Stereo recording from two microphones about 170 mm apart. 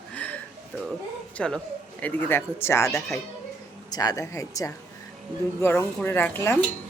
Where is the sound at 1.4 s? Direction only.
5° left (ahead or behind).